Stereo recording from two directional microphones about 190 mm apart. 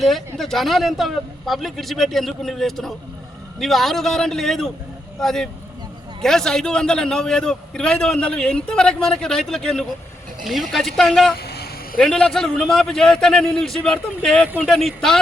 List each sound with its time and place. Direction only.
0.0 s a man's voice: centre (ahead or behind)
11.3 s vehicle: 60° left (ahead or behind)
11.9 s a man's voice: 5° left (ahead or behind)